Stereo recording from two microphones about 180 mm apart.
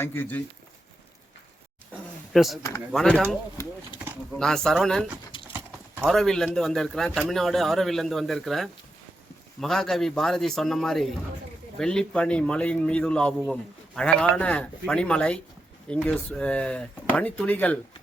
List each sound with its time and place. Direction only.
0.0 s speech: 10° left (ahead or behind)
2.3 s speech: centre (ahead or behind)
4.4 s speech: 5° left (ahead or behind)
5.5 s clip-clop: 10° right (ahead or behind)
6.1 s speech: 5° left (ahead or behind)